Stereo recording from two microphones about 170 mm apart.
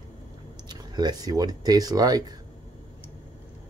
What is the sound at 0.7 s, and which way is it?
Speech, 25° right (ahead or behind).